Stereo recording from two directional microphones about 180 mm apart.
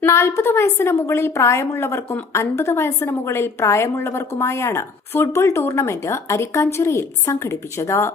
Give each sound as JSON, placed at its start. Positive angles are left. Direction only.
{"t": 0.0, "sound": "a woman's voice", "side_deg": 15}